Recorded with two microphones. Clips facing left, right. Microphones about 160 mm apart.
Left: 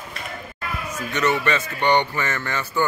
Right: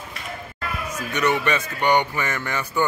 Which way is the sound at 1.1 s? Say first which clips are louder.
Even; 15° right (ahead or behind).